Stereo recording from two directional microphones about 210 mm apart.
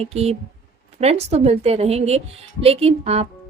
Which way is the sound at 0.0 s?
30° right (ahead or behind).